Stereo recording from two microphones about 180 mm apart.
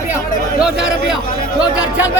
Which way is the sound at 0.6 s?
5° right (ahead or behind).